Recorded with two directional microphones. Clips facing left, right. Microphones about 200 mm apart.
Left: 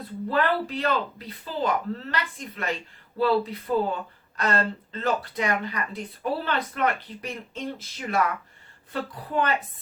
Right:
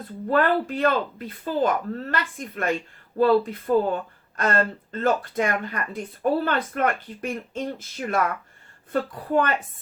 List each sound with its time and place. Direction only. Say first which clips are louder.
0.3 s speech: right 4 dB; 50° right (ahead or behind)